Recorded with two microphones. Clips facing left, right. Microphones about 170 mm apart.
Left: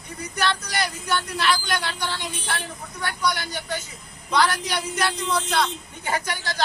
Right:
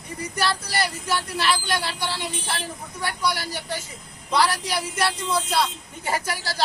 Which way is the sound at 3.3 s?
30° right (ahead or behind).